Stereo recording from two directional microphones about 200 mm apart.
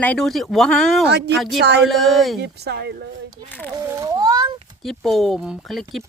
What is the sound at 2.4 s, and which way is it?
Speech, 55° right (ahead or behind).